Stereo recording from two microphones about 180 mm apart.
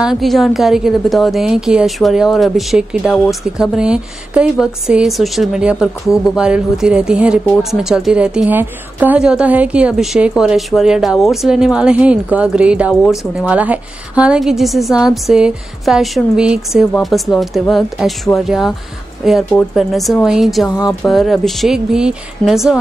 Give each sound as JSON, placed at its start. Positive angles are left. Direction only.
{"t": 0.0, "sound": "a woman's voice", "side_deg": 0}